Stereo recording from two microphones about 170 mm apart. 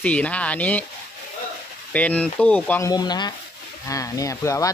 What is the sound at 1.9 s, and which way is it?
Speech, 10° left (ahead or behind).